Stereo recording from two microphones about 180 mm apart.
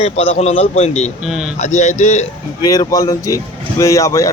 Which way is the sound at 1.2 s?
5° right (ahead or behind).